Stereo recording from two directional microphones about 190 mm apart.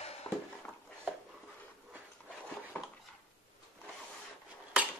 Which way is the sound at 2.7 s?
10° left (ahead or behind).